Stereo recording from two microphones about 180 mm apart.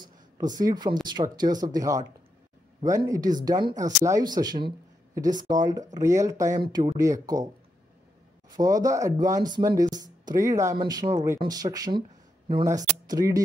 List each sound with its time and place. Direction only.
0.0 s a sound: 20° right (ahead or behind)
1.0 s speech: 25° right (ahead or behind)
8.5 s speech: 20° right (ahead or behind)